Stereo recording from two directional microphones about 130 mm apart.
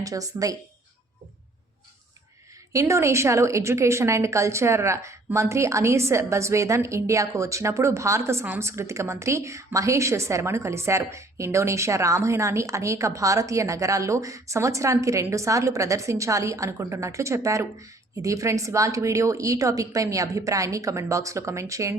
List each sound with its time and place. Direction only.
0.0 s a woman's voice: 25° right (ahead or behind)
2.7 s a woman's voice: 25° right (ahead or behind)